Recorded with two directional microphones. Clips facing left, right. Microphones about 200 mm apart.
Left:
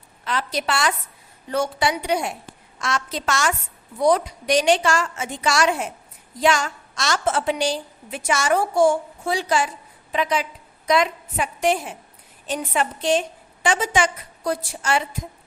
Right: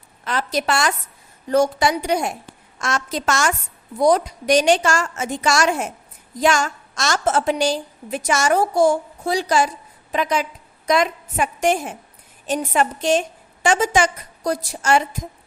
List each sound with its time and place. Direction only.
0.3 s a woman's voice: 45° right (ahead or behind)